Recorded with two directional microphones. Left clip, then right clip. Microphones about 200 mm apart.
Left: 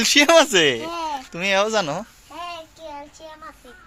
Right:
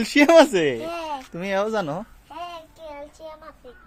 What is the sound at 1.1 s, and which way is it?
Speech, 15° right (ahead or behind).